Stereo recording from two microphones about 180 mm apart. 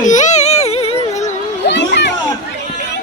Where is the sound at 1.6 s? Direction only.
75° left (ahead or behind).